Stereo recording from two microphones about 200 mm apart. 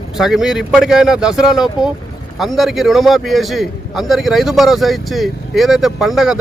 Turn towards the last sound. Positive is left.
turn(degrees=0)  # may be behind; listen again after turning